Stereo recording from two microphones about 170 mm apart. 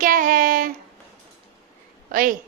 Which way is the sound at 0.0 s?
55° right (ahead or behind).